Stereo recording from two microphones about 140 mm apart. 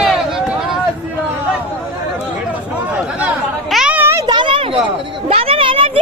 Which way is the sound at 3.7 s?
5° right (ahead or behind).